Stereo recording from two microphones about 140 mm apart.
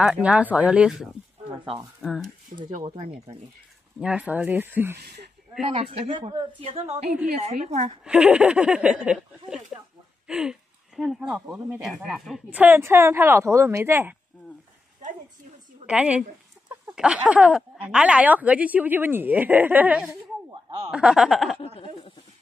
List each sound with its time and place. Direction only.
0.0 s speech: 10° right (ahead or behind)
1.6 s speech: 30° right (ahead or behind)
2.0 s speech: centre (ahead or behind)
4.0 s speech: 10° right (ahead or behind)
5.8 s speech: 40° right (ahead or behind)
8.0 s speech: 10° right (ahead or behind)
10.2 s a sound: 5° right (ahead or behind)
11.1 s speech: 5° right (ahead or behind)
15.9 s speech: 5° right (ahead or behind)
20.9 s a sound: 5° right (ahead or behind)
21.7 s speech: 45° left (ahead or behind)